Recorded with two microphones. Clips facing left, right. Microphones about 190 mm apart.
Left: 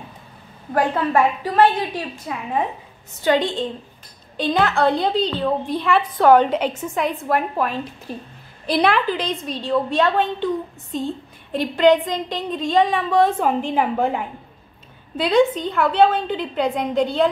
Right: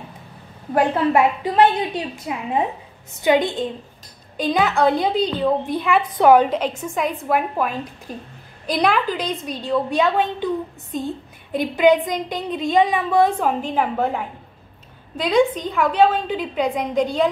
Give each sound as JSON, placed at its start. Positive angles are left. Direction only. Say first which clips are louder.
{"t": 0.9, "sound": "a woman's voice", "louder": "right 1 dB", "side_deg": -20}
{"t": 6.8, "sound": "a woman's voice", "louder": "left 1 dB", "side_deg": 0}
{"t": 8.7, "sound": "a woman's voice", "louder": "left 1 dB", "side_deg": 0}
{"t": 15.2, "sound": "a woman's voice", "louder": "left 1 dB", "side_deg": 0}